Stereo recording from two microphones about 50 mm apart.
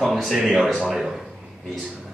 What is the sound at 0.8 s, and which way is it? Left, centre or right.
Speech, centre.